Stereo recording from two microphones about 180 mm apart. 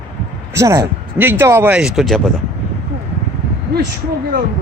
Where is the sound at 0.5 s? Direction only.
15° right (ahead or behind); by 2.2 s centre (ahead or behind).